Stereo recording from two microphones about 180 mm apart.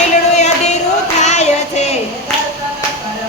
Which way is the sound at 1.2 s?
40° left (ahead or behind).